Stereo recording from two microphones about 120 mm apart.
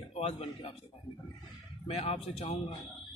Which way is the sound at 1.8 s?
55° left (ahead or behind).